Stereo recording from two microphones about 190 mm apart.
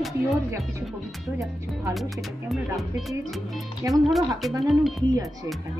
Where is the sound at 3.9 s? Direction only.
Centre (ahead or behind).